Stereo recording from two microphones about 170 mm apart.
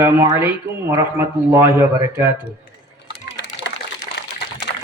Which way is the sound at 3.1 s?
85° left.